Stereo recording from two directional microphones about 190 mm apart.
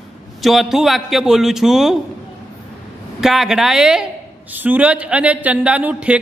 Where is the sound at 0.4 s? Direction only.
Centre (ahead or behind).